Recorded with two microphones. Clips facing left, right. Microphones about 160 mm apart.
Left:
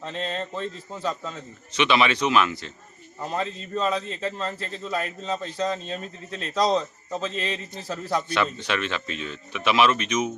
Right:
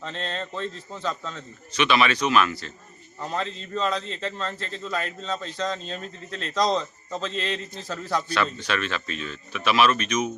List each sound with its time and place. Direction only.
0.0 s a man's voice: 5° left (ahead or behind)
1.7 s speech: 20° left (ahead or behind)
3.2 s a man's voice: 5° left (ahead or behind)
8.1 s speech: 20° left (ahead or behind)